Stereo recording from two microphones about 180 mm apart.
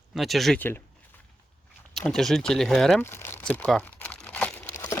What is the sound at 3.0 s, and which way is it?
Crumpling, 15° left (ahead or behind).